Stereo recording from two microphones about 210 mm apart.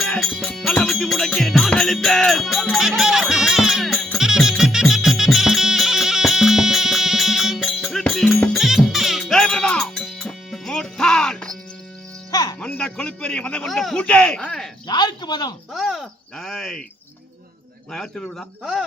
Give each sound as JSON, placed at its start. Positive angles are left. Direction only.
{"t": 0.0, "sound": "music", "side_deg": 0}
{"t": 12.3, "sound": "music", "side_deg": 20}
{"t": 12.5, "sound": "a man's voice", "side_deg": 5}
{"t": 14.8, "sound": "speech", "side_deg": 20}
{"t": 15.7, "sound": "groan", "side_deg": 0}
{"t": 17.9, "sound": "a man's voice", "side_deg": 5}